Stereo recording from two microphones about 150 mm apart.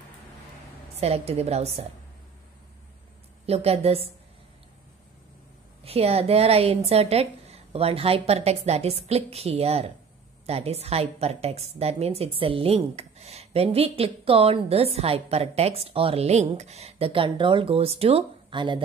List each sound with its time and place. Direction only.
0.9 s a woman's voice: 45° right (ahead or behind)
3.4 s a woman's voice: 45° right (ahead or behind)
5.9 s a woman's voice: 45° right (ahead or behind)